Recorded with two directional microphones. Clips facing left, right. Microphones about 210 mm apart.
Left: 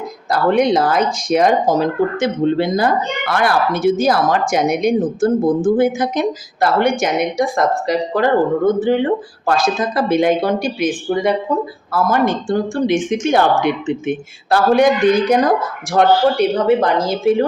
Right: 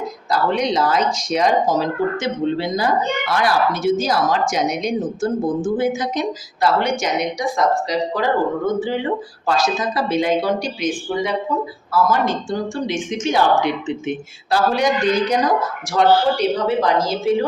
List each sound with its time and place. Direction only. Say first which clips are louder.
0.3 s speech: left 5 dB; 55° left (ahead or behind)